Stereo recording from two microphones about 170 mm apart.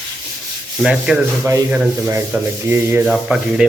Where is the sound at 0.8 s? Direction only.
5° right (ahead or behind).